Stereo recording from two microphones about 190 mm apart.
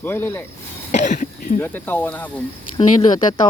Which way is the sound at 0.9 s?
40° left (ahead or behind).